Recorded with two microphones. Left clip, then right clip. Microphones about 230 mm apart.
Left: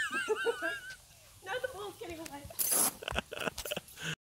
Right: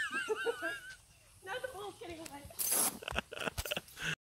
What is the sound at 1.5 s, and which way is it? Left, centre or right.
Sizzle, left.